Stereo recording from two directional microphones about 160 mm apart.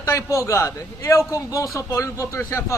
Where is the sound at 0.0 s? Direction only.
20° left (ahead or behind).